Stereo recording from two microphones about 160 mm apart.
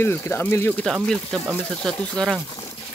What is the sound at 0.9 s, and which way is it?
Speech, centre (ahead or behind).